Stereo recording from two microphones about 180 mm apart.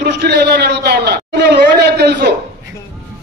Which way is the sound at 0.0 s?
65° right (ahead or behind).